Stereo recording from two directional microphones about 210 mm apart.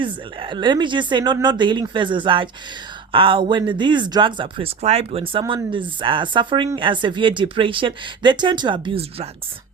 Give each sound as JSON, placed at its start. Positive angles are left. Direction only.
{"t": 0.0, "sound": "speech", "side_deg": -25}